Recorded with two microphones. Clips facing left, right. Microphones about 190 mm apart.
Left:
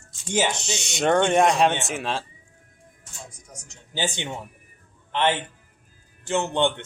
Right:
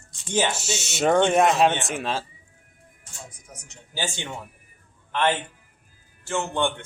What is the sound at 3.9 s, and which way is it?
A man's voice, 20° left (ahead or behind).